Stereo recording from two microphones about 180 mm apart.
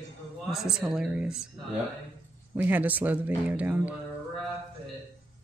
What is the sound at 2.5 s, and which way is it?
Speech, 10° right (ahead or behind).